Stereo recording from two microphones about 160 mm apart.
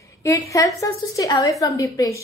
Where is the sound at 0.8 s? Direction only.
20° left (ahead or behind).